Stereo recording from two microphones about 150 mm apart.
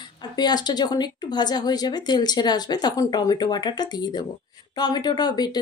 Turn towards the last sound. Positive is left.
turn(degrees=25)  # may be behind; listen again after turning